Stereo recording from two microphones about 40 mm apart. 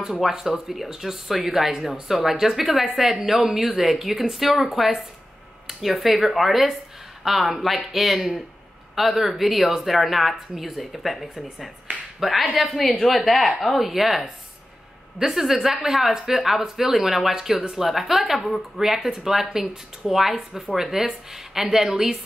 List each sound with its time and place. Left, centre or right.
0.0 s speech: centre
21.8 s a woman's voice: right